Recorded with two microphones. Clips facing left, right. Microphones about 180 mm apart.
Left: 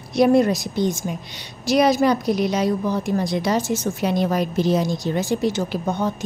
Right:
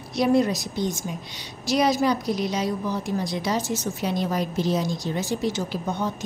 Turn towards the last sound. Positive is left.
turn(degrees=55)  # may be behind; listen again after turning